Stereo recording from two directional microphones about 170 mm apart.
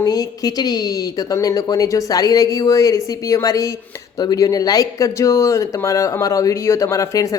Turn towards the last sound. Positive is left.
turn(degrees=20)  # may be behind; listen again after turning